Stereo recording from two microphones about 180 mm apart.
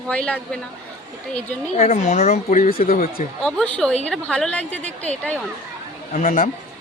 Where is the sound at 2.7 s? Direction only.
55° left (ahead or behind).